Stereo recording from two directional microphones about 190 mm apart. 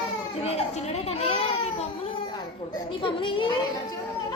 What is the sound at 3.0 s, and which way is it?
Speech, 25° left (ahead or behind).